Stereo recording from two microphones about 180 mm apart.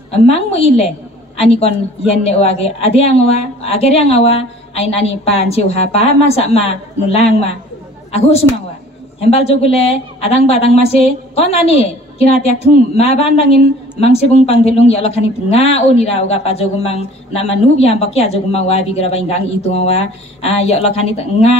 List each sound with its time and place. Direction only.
0.1 s a woman's voice: 35° left (ahead or behind)
2.2 s a woman's voice: 35° left (ahead or behind)